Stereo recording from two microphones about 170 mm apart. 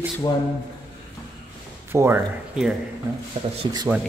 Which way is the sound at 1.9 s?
10° right (ahead or behind).